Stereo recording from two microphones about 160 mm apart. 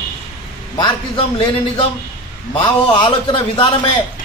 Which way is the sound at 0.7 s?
30° left (ahead or behind).